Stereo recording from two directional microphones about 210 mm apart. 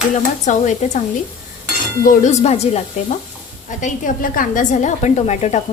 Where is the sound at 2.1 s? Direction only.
35° left (ahead or behind).